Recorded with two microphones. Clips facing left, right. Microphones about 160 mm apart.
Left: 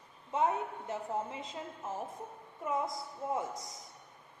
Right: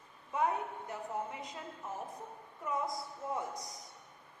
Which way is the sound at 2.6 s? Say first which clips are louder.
Left 2 dB; 20° left (ahead or behind).